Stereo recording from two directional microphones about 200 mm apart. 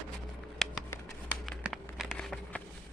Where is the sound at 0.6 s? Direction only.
Centre (ahead or behind).